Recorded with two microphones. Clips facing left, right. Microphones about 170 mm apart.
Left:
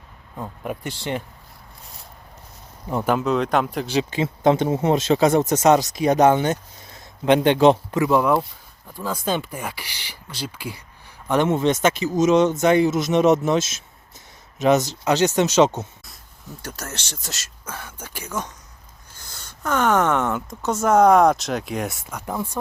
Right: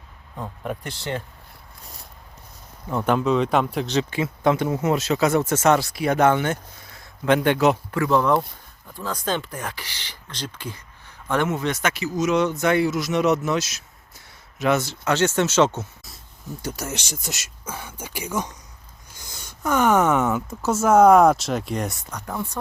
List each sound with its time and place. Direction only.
0.3 s speech: 10° left (ahead or behind)
3.0 s speech: 5° left (ahead or behind)
4.1 s speech: 25° left (ahead or behind)
7.9 s speech: 15° left (ahead or behind)
11.4 s speech: 25° left (ahead or behind)
16.6 s speech: 10° right (ahead or behind); by 22.5 s 10° left (ahead or behind)